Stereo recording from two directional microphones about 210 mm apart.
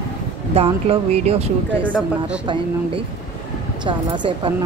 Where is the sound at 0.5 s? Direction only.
30° right (ahead or behind).